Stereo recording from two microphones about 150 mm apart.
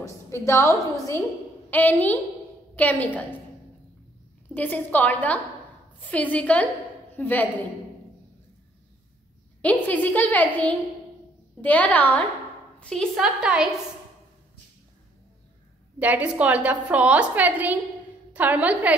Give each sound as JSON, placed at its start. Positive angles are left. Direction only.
{"t": 0.0, "sound": "a woman's voice", "side_deg": 20}
{"t": 4.6, "sound": "a woman's voice", "side_deg": 10}
{"t": 9.6, "sound": "a woman's voice", "side_deg": 10}
{"t": 16.0, "sound": "a woman's voice", "side_deg": -10}